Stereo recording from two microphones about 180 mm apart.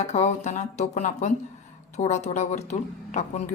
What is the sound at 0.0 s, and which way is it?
Speech, 40° left (ahead or behind).